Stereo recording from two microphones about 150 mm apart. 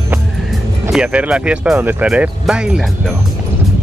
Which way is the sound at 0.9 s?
5° right (ahead or behind).